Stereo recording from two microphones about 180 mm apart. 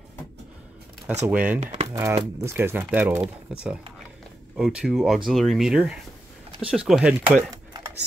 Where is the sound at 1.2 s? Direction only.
10° right (ahead or behind).